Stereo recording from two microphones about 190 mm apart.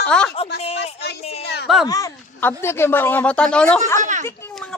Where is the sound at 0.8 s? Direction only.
60° left (ahead or behind).